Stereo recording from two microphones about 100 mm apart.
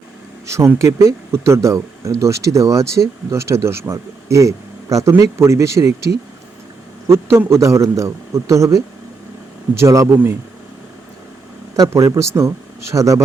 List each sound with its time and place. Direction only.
0.4 s speech: 30° right (ahead or behind)
7.1 s a man's voice: 25° right (ahead or behind)
11.8 s speech: 30° right (ahead or behind)